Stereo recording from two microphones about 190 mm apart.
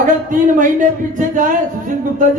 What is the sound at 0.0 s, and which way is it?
A man's voice, 45° right (ahead or behind).